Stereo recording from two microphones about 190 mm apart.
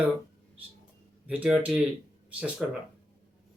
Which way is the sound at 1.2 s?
5° right (ahead or behind).